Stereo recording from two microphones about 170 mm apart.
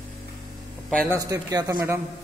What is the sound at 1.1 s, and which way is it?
Speech, 20° right (ahead or behind).